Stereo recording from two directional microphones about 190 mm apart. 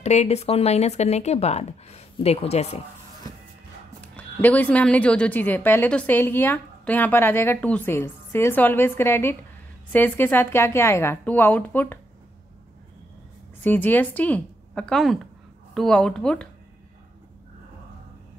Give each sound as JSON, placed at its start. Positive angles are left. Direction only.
{"t": 0.0, "sound": "speech", "side_deg": 35}
{"t": 4.0, "sound": "speech", "side_deg": 10}
{"t": 13.6, "sound": "speech", "side_deg": 10}